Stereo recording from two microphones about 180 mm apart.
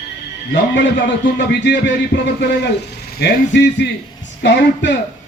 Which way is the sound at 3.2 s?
70° left (ahead or behind).